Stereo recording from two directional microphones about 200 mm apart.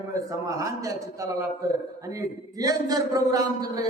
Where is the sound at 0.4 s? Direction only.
15° right (ahead or behind).